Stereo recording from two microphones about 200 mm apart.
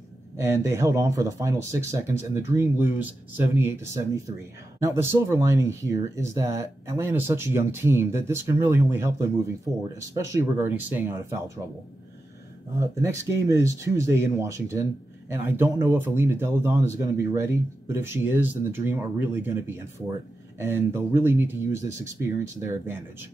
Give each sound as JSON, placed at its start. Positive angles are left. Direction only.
{"t": 0.4, "sound": "speech", "side_deg": -15}
{"t": 12.8, "sound": "speech", "side_deg": -15}